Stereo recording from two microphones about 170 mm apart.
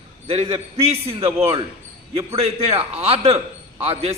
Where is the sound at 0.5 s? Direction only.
35° right (ahead or behind).